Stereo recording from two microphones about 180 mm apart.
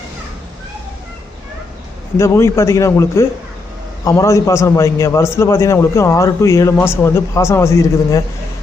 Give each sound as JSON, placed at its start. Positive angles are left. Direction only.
{"t": 2.1, "sound": "a man's voice", "side_deg": 15}